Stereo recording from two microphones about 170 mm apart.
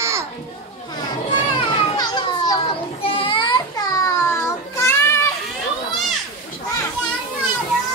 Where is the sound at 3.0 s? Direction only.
30° left (ahead or behind).